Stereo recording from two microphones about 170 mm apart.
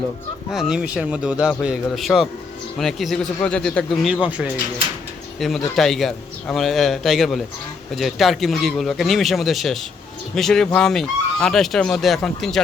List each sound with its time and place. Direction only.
0.5 s speech: 5° right (ahead or behind)